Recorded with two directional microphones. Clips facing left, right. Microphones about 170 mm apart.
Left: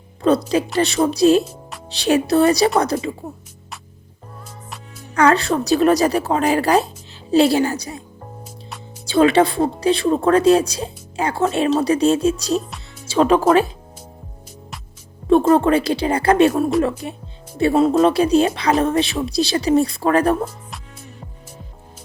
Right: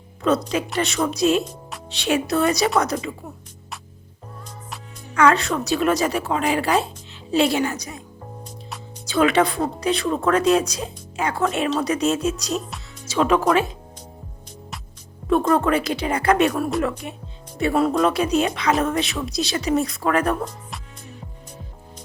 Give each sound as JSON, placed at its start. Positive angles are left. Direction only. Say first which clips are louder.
{"t": 0.2, "sound": "a woman's voice", "louder": "left 4 dB", "side_deg": 35}
{"t": 5.1, "sound": "a woman's voice", "louder": "left 2 dB", "side_deg": 35}
{"t": 9.0, "sound": "a woman's voice", "louder": "left 4 dB", "side_deg": 30}
{"t": 15.3, "sound": "a woman's voice", "louder": "left 5 dB", "side_deg": 30}